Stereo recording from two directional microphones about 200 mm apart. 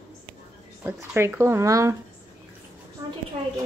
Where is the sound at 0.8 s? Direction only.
10° right (ahead or behind).